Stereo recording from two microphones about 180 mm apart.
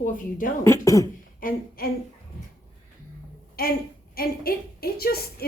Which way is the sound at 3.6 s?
55° left (ahead or behind).